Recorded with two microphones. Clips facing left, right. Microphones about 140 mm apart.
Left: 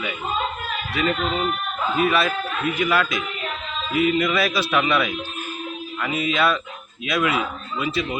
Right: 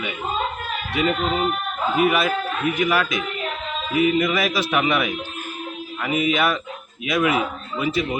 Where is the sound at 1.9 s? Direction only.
20° right (ahead or behind).